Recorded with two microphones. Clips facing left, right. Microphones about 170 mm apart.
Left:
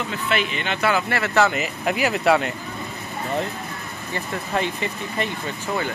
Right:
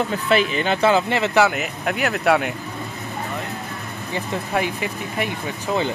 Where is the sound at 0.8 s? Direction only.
20° right (ahead or behind).